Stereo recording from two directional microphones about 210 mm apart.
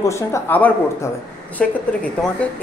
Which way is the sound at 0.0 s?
15° left (ahead or behind).